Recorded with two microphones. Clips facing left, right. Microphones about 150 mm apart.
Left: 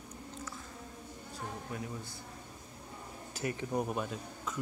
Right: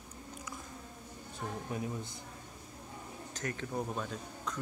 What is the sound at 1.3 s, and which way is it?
Speech, 20° right (ahead or behind).